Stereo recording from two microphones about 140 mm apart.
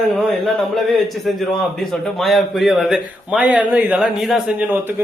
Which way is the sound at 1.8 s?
Centre (ahead or behind).